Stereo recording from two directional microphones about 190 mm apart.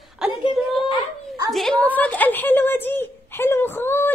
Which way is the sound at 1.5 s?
Centre (ahead or behind).